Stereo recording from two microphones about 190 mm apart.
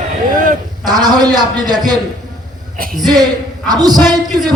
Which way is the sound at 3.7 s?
20° right (ahead or behind).